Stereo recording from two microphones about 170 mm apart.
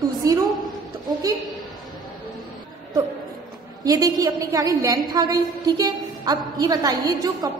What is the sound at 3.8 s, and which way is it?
A woman's voice, 20° right (ahead or behind).